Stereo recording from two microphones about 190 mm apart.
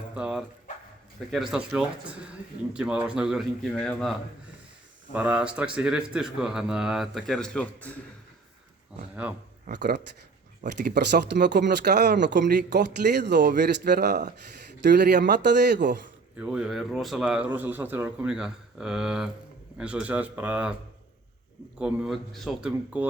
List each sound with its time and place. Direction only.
0.1 s a man's voice: 5° right (ahead or behind)
9.6 s speech: 60° right (ahead or behind)
16.4 s a man's voice: 5° right (ahead or behind)
21.8 s a man's voice: 5° right (ahead or behind)